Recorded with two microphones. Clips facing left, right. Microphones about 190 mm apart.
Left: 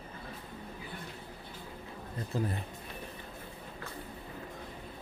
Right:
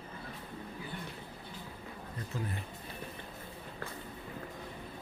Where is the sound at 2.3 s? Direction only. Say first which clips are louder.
Left 6 dB; 35° left (ahead or behind).